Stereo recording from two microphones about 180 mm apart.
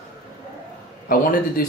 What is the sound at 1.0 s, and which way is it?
Speech, 55° left (ahead or behind).